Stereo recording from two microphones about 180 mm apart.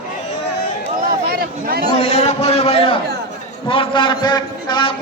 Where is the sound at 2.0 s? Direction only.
35° left (ahead or behind).